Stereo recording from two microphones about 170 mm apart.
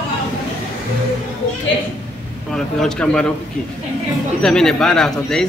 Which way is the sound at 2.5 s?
5° left (ahead or behind).